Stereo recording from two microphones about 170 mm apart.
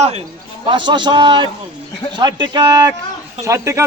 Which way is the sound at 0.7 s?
30° right (ahead or behind).